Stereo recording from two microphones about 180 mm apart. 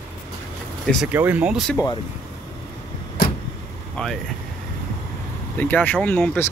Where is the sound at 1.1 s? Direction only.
10° right (ahead or behind).